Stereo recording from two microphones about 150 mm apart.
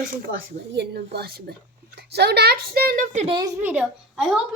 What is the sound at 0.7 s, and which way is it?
A child's voice, 90° right.